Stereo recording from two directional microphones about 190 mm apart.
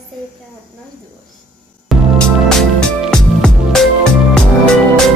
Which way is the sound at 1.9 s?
Centre (ahead or behind).